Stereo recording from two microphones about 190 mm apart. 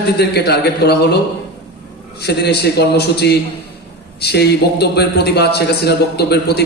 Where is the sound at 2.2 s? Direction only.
60° left (ahead or behind).